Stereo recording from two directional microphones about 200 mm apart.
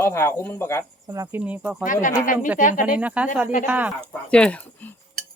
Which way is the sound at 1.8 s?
40° left (ahead or behind).